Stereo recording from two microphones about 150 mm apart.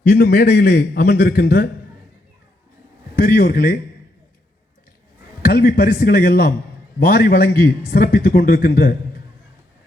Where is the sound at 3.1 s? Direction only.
75° left (ahead or behind).